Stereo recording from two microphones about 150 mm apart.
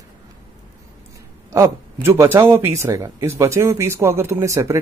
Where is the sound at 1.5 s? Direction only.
20° right (ahead or behind).